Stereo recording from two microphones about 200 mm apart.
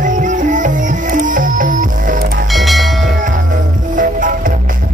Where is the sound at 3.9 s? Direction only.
40° right (ahead or behind).